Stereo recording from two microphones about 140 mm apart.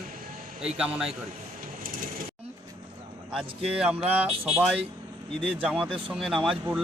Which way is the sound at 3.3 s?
5° right (ahead or behind).